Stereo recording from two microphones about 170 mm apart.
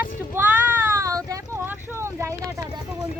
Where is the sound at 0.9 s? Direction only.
20° right (ahead or behind).